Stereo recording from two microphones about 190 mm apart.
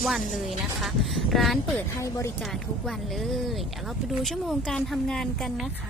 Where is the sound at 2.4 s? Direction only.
Centre (ahead or behind).